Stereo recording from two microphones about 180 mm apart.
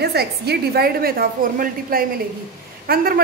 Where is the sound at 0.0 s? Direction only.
65° right (ahead or behind).